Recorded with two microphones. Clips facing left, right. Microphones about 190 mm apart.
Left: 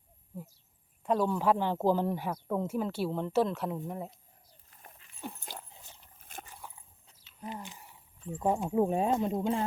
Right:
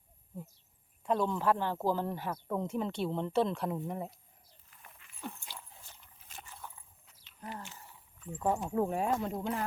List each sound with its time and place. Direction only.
1.0 s speech: 5° left (ahead or behind)
4.7 s dog: 35° left (ahead or behind)
6.1 s horse: 50° left (ahead or behind)
6.6 s horse: 10° left (ahead or behind)
7.4 s a sound: 15° left (ahead or behind)
8.4 s speech: 15° left (ahead or behind)